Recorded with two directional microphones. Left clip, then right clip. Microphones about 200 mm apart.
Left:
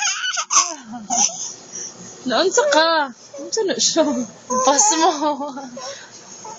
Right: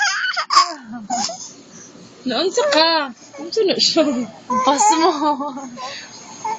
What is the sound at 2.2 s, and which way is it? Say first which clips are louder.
A woman's voice: left 1 dB; centre (ahead or behind).